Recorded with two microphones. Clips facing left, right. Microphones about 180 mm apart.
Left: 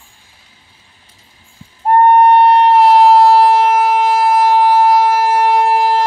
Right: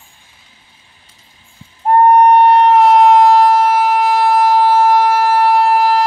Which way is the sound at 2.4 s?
30° left (ahead or behind).